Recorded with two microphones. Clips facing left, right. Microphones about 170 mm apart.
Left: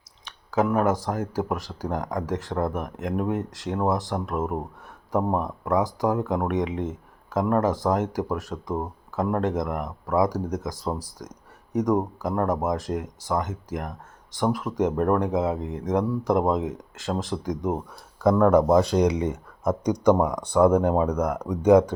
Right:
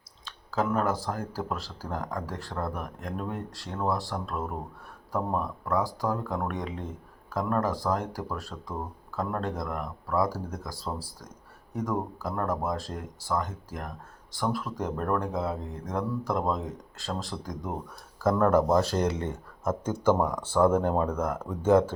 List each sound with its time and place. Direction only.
0.3 s speech: 15° left (ahead or behind)
6.7 s speech: 90° left
7.3 s speech: 20° left (ahead or behind)
15.6 s speech: 90° left
15.9 s speech: 20° left (ahead or behind)
18.2 s speech: centre (ahead or behind)